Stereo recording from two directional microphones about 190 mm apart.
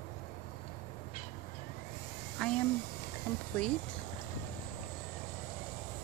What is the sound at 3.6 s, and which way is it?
Speech, 5° left (ahead or behind).